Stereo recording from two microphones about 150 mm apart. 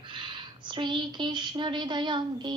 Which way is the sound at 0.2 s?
30° right (ahead or behind).